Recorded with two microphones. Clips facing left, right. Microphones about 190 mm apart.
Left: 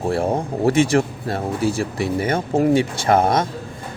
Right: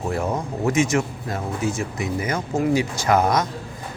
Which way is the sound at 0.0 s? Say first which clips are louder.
Left 4 dB; 30° left (ahead or behind).